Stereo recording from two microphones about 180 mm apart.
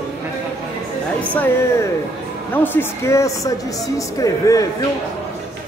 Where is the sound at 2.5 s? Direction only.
10° left (ahead or behind).